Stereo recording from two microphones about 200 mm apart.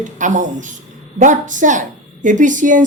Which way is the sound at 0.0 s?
40° right (ahead or behind).